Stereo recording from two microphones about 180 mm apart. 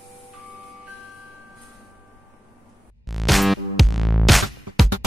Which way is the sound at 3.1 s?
Centre (ahead or behind).